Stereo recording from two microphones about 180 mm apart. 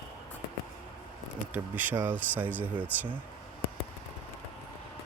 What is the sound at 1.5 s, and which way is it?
Speech, 10° right (ahead or behind).